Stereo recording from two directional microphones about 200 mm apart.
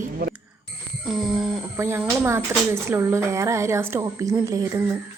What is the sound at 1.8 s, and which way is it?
A woman's voice, 10° right (ahead or behind).